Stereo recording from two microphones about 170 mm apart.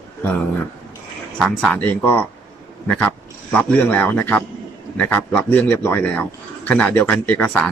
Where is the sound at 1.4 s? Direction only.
5° left (ahead or behind).